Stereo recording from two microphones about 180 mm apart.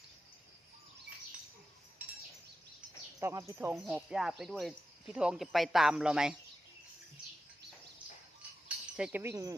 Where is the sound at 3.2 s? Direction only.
15° right (ahead or behind).